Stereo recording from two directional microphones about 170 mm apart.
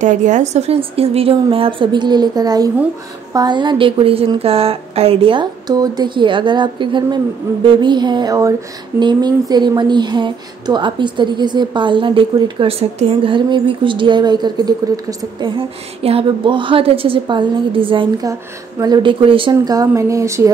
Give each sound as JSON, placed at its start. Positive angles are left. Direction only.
{"t": 0.0, "sound": "a woman's voice", "side_deg": -45}